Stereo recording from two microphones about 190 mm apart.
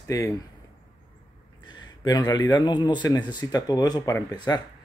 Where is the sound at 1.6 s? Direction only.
25° left (ahead or behind).